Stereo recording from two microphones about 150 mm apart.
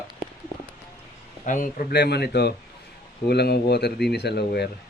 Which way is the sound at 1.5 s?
60° left (ahead or behind).